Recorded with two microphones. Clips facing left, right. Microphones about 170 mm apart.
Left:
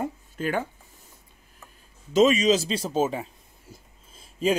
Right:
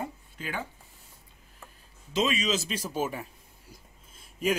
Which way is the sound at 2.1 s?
40° left (ahead or behind).